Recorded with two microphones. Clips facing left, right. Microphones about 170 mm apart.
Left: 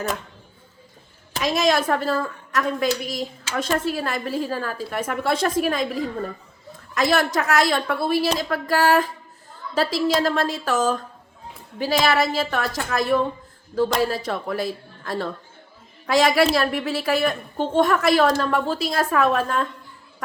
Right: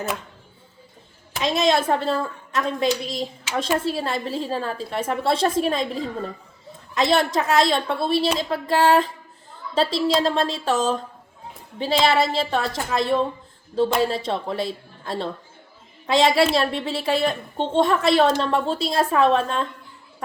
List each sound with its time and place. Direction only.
1.4 s a woman's voice: 25° right (ahead or behind)